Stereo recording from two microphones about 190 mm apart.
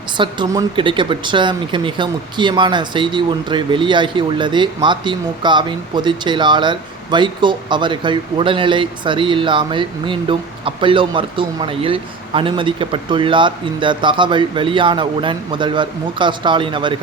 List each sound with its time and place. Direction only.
0.2 s speech: 25° right (ahead or behind)